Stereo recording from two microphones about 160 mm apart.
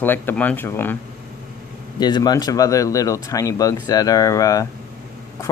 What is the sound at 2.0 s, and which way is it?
Speech, 25° left (ahead or behind).